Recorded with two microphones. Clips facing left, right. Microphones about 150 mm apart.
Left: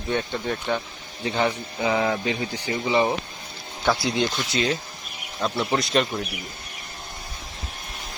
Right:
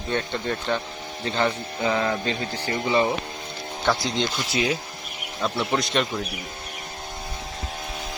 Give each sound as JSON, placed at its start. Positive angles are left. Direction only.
{"t": 0.1, "sound": "speech", "side_deg": 10}
{"t": 3.8, "sound": "speech", "side_deg": 10}
{"t": 4.5, "sound": "speech", "side_deg": -10}